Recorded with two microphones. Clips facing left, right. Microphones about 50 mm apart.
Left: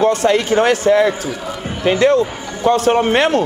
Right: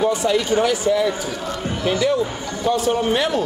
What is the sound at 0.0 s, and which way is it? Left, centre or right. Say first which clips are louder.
Speech: left 5 dB; left.